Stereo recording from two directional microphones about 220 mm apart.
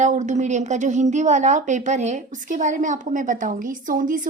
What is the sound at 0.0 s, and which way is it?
A woman's voice, 35° right (ahead or behind).